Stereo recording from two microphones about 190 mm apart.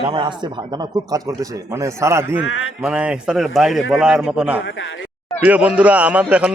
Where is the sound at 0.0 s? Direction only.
25° right (ahead or behind).